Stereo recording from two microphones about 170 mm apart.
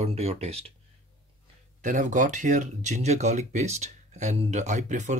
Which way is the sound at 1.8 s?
50° right (ahead or behind).